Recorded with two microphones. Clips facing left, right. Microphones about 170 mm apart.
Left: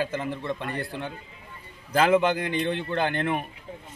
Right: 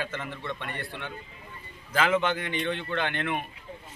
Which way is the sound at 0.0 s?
35° left (ahead or behind).